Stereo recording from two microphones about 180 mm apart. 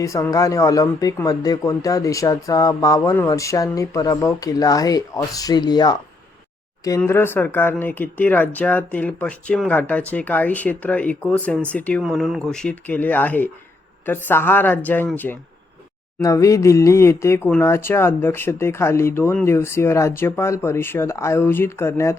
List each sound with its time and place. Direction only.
0.0 s speech: 15° left (ahead or behind)